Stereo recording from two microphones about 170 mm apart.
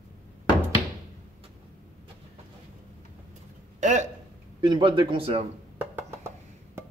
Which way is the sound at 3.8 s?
45° right (ahead or behind).